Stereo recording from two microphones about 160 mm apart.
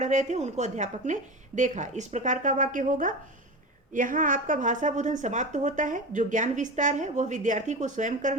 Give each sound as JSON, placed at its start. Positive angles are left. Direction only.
{"t": 0.0, "sound": "a woman's voice", "side_deg": -50}